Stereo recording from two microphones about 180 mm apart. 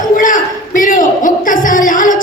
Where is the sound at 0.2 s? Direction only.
45° left (ahead or behind).